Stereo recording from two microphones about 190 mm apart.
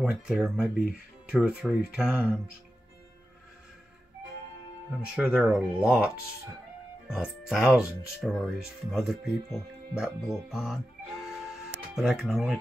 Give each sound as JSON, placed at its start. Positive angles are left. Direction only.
{"t": 0.0, "sound": "speech", "side_deg": 0}
{"t": 0.8, "sound": "speech", "side_deg": 50}
{"t": 1.3, "sound": "speech", "side_deg": -5}
{"t": 4.9, "sound": "speech", "side_deg": -5}
{"t": 11.9, "sound": "speech", "side_deg": 0}